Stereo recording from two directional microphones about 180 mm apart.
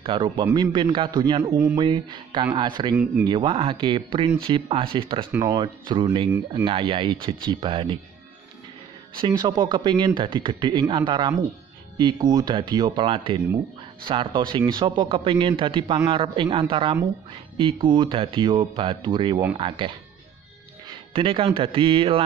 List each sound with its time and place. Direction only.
0.0 s speech: 25° right (ahead or behind)
9.1 s speech: 25° right (ahead or behind)